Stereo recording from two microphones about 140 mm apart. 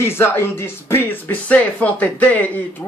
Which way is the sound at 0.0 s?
15° left (ahead or behind).